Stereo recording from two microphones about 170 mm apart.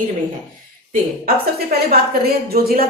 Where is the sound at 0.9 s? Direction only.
60° right (ahead or behind).